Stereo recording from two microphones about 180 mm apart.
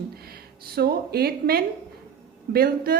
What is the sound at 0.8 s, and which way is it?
A woman's voice, 60° right (ahead or behind).